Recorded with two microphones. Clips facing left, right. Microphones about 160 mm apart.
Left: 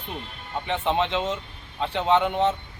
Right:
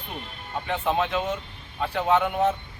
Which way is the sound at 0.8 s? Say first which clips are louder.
Left 1 dB; 20° left (ahead or behind).